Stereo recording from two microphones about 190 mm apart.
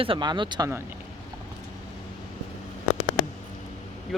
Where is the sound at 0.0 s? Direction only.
25° right (ahead or behind).